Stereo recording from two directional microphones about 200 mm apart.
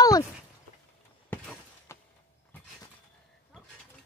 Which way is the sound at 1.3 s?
10° left (ahead or behind).